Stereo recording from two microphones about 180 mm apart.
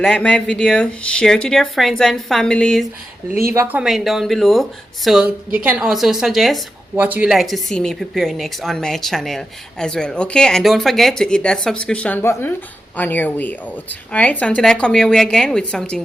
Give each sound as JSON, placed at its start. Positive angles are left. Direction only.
{"t": 0.0, "sound": "a woman's voice", "side_deg": 5}
{"t": 3.5, "sound": "a woman's voice", "side_deg": -10}